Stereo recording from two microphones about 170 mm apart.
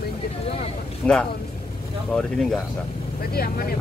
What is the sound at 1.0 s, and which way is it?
Speech, 5° left (ahead or behind).